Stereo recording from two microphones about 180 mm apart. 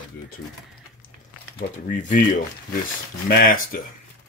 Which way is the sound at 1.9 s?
45° left (ahead or behind).